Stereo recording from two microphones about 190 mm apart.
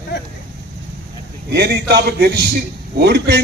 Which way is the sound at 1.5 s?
60° right (ahead or behind).